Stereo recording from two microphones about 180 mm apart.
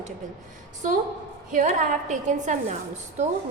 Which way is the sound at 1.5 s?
45° right (ahead or behind).